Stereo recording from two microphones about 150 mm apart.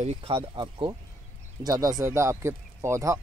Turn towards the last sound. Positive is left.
turn(degrees=-20)  # may be behind; listen again after turning